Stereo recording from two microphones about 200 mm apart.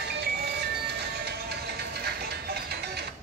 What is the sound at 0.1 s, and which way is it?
Music, 55° right (ahead or behind).